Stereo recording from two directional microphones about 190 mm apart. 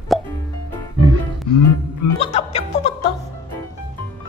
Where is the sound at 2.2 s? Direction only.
35° left (ahead or behind).